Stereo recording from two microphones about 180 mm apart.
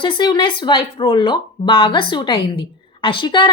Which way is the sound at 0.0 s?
25° left (ahead or behind).